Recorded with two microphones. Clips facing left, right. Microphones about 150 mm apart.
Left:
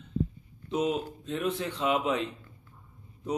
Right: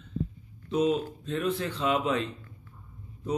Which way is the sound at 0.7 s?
20° left (ahead or behind).